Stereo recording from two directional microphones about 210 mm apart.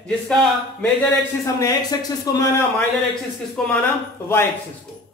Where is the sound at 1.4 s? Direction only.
15° left (ahead or behind).